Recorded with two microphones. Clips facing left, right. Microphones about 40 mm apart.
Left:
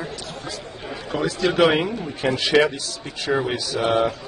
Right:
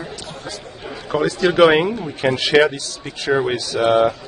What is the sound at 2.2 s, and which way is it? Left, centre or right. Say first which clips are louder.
A man's voice: right 3 dB; right.